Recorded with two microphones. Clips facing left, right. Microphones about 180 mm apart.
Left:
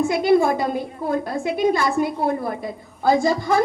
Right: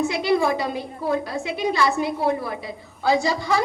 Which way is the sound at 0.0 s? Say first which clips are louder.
Left 4 dB; 50° left (ahead or behind).